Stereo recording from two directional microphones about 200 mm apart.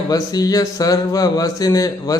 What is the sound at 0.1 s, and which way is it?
A man's voice, 20° left (ahead or behind).